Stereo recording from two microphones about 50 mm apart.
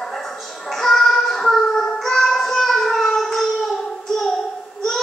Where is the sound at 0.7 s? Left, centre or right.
Centre.